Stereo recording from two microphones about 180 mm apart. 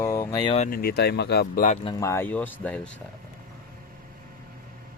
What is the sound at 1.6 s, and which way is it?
Speech, 40° left (ahead or behind).